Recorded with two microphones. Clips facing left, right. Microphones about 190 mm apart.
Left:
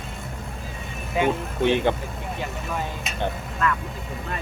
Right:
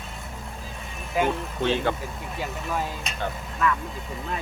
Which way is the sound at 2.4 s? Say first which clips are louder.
Right 2 dB; centre (ahead or behind).